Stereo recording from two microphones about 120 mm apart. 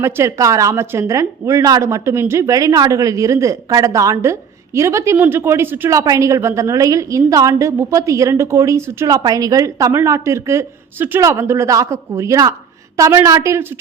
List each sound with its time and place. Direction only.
0.0 s speech: 25° right (ahead or behind)